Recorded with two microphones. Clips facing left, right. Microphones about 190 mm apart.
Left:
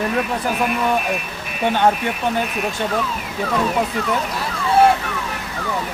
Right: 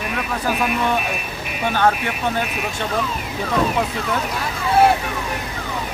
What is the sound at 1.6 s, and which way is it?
Speech, 20° left (ahead or behind).